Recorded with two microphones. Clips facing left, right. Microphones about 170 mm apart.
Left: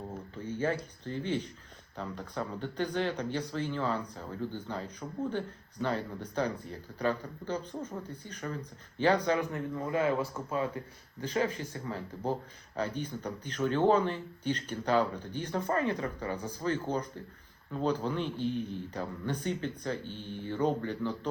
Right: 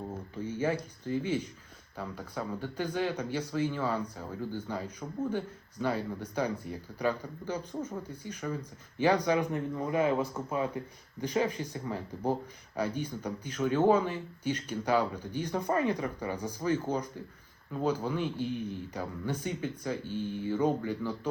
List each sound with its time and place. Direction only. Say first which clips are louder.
0.4 s speech: right 1 dB; 10° right (ahead or behind)